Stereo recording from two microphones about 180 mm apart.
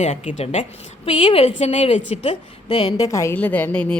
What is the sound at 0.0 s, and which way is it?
A woman's voice, 35° left (ahead or behind).